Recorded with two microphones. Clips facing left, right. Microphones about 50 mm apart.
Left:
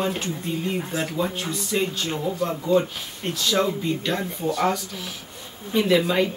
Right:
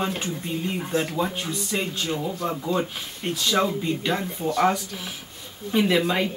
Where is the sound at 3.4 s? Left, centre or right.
Centre.